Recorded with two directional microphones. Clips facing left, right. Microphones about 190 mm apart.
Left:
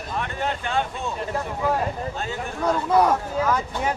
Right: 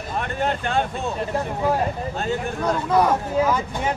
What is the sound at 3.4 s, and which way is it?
Speech, 10° right (ahead or behind).